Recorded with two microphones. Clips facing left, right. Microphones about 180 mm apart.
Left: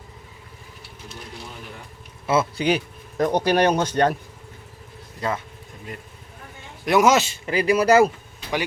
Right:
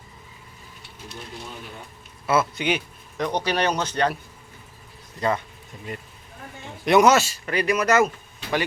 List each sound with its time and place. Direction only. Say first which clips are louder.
2.2 s speech: left 2 dB; 25° left (ahead or behind); by 4.1 s 50° left (ahead or behind)
5.2 s speech: right 2 dB; 5° left (ahead or behind)
6.8 s speech: right 1 dB; centre (ahead or behind)
7.1 s speech: even; 20° left (ahead or behind)